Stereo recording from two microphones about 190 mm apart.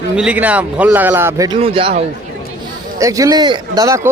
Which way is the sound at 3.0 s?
15° right (ahead or behind).